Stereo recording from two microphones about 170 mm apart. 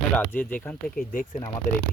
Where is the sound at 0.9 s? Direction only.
55° left (ahead or behind).